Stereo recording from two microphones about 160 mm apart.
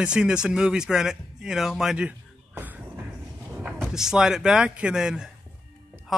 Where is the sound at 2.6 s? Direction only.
10° right (ahead or behind).